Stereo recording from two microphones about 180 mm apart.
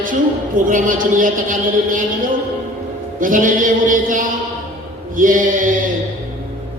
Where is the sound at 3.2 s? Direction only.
50° right (ahead or behind).